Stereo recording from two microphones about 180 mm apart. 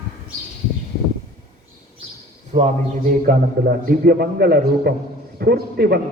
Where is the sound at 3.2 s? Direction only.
55° right (ahead or behind).